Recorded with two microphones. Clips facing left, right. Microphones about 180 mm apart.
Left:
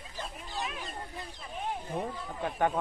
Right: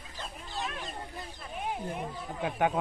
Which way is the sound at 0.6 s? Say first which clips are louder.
Right 1 dB; 5° left (ahead or behind).